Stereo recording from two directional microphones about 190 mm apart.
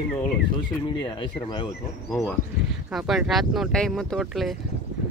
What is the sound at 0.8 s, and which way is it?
Speech, 25° left (ahead or behind).